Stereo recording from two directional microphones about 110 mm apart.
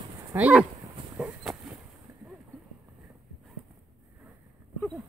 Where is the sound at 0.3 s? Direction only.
10° right (ahead or behind).